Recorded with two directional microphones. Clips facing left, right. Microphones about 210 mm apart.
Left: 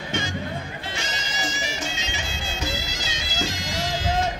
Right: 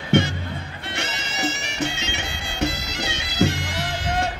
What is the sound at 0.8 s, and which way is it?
Music, 65° right (ahead or behind).